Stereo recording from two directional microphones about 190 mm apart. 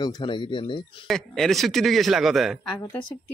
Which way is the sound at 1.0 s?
Centre (ahead or behind).